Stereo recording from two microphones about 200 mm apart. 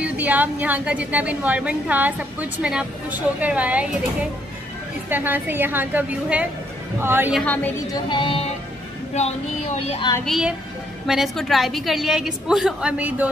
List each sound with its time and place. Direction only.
0.0 s a woman's voice: 10° right (ahead or behind)
5.1 s a woman's voice: 10° right (ahead or behind)
7.3 s a woman's voice: 10° left (ahead or behind)
7.9 s music: 25° left (ahead or behind)
9.1 s speech: 35° left (ahead or behind)
10.2 s a woman's voice: centre (ahead or behind)